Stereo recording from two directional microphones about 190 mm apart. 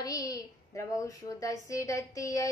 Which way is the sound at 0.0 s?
20° left (ahead or behind).